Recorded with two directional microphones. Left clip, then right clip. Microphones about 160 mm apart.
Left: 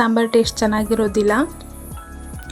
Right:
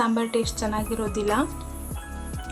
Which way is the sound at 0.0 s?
40° left (ahead or behind).